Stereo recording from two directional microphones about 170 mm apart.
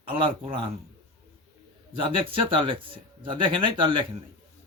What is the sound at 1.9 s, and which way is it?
Speech, 30° right (ahead or behind).